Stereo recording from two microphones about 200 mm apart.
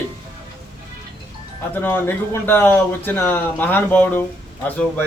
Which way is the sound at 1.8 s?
10° left (ahead or behind).